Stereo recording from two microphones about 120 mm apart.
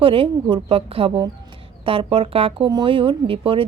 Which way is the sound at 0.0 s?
50° right (ahead or behind).